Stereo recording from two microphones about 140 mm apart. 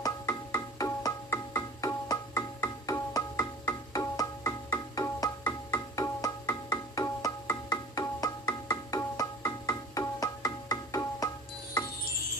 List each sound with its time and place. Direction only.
0.0 s music: 25° left (ahead or behind)